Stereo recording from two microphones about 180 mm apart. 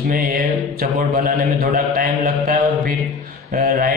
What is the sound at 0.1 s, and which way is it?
Mantra, 55° right (ahead or behind).